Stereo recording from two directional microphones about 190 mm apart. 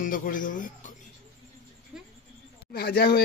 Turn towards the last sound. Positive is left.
turn(degrees=55)  # may be behind; listen again after turning